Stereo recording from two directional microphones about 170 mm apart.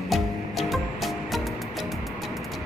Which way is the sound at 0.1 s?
Centre (ahead or behind).